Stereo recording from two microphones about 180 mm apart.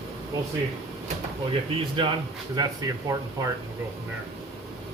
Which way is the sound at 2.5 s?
20° right (ahead or behind).